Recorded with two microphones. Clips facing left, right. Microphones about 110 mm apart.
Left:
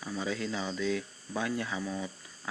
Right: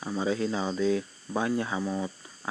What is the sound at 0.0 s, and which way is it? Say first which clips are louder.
Speech: right 6 dB; 30° right (ahead or behind).